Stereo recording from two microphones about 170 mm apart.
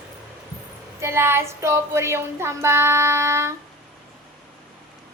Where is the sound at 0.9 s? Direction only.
15° right (ahead or behind).